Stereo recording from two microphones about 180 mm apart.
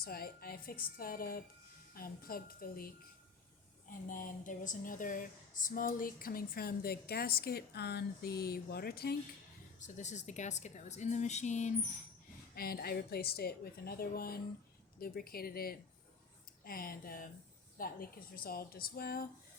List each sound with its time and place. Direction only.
0.0 s speech: 55° left (ahead or behind)
9.8 s a woman's voice: 40° left (ahead or behind)
12.5 s speech: 55° left (ahead or behind)